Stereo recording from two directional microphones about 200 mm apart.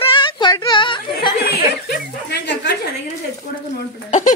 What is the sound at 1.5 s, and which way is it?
Speech, 55° left (ahead or behind).